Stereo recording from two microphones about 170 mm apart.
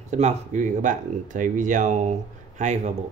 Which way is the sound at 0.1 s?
45° right (ahead or behind).